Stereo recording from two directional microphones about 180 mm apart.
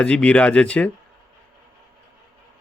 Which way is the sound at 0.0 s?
5° left (ahead or behind).